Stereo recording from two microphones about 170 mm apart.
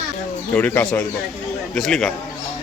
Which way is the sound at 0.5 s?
10° left (ahead or behind).